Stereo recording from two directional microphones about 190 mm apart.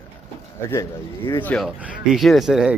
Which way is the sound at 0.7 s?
15° left (ahead or behind).